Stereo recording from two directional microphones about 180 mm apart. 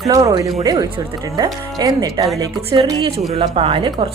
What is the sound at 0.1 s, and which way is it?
A woman's voice, 20° right (ahead or behind).